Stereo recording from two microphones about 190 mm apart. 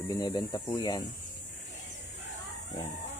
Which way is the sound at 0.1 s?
20° left (ahead or behind).